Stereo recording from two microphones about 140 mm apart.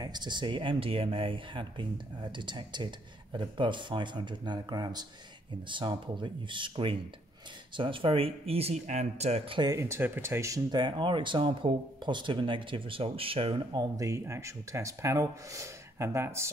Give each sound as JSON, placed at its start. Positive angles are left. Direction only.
{"t": 0.0, "sound": "speech", "side_deg": -30}
{"t": 9.6, "sound": "speech", "side_deg": -25}
{"t": 13.7, "sound": "speech", "side_deg": -25}